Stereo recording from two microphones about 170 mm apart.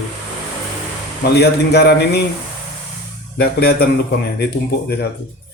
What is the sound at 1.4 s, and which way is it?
Speech, 80° left.